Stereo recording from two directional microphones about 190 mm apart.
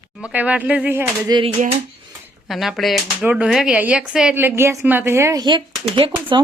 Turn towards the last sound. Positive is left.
turn(degrees=-25)  # may be behind; listen again after turning